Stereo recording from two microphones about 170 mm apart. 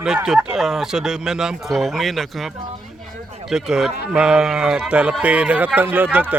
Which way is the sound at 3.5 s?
5° right (ahead or behind).